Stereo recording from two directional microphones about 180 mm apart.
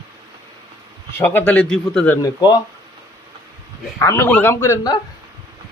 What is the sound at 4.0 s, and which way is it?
Speech, 15° left (ahead or behind).